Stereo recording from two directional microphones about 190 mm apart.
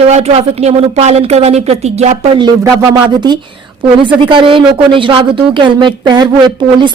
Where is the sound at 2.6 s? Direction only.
15° right (ahead or behind).